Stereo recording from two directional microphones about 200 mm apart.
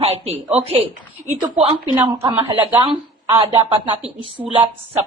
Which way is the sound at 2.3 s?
25° right (ahead or behind).